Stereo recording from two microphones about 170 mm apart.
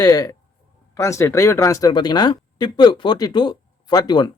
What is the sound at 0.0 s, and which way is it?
Speech, 20° left (ahead or behind).